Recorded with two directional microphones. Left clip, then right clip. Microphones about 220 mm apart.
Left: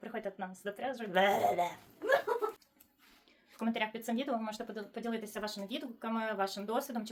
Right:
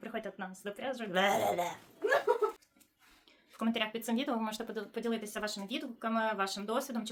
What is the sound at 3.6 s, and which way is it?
Speech, 15° right (ahead or behind).